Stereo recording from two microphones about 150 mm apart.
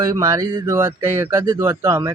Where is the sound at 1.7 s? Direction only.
25° right (ahead or behind).